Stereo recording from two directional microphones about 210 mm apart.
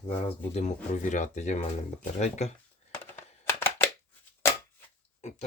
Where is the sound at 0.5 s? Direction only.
35° left (ahead or behind).